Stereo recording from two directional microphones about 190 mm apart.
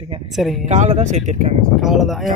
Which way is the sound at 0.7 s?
40° right (ahead or behind).